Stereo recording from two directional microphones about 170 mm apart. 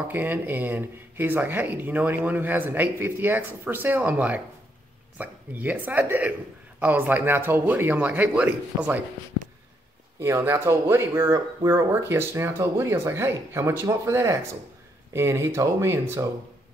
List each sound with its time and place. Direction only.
0.1 s speech: 10° right (ahead or behind)
10.2 s speech: 15° right (ahead or behind)